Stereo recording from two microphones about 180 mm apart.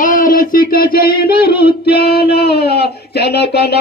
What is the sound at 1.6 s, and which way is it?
Child singing, 60° left (ahead or behind).